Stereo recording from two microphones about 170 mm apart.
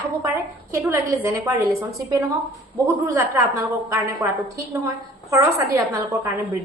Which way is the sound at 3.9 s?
20° right (ahead or behind).